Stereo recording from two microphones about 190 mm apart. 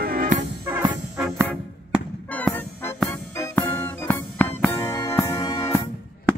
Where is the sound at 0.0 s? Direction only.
50° right (ahead or behind).